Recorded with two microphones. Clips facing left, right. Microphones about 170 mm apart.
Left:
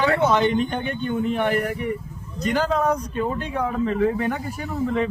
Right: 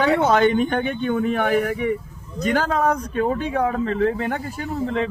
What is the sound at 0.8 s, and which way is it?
Speech, 70° right (ahead or behind).